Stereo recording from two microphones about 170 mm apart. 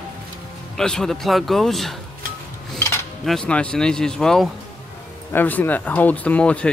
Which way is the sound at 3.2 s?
Centre (ahead or behind).